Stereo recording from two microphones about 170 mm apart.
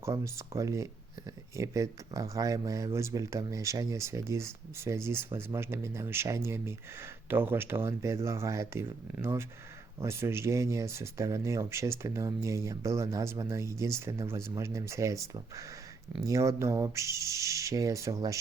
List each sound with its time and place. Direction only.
0.0 s speech: 15° right (ahead or behind)